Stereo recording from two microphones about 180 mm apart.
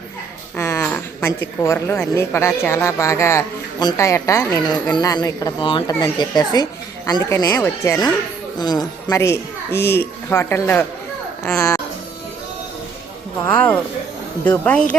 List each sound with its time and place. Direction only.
0.5 s a sound: 15° left (ahead or behind)
2.1 s a child's voice: 15° left (ahead or behind)
13.4 s a child's voice: 10° left (ahead or behind)